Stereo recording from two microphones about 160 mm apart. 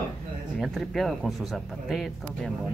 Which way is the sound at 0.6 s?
Centre (ahead or behind).